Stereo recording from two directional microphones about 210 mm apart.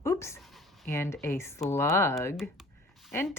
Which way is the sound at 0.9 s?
15° left (ahead or behind).